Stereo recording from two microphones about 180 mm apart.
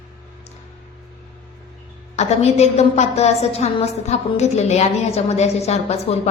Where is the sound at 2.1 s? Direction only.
35° left (ahead or behind).